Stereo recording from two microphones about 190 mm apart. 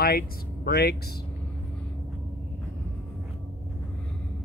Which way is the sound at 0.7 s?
55° left (ahead or behind).